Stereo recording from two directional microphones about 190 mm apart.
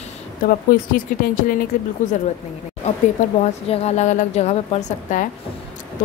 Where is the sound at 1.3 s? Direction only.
45° left (ahead or behind).